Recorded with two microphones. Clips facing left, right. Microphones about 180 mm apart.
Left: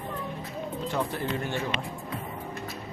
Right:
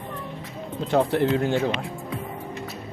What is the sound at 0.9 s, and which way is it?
Speech, 75° right (ahead or behind).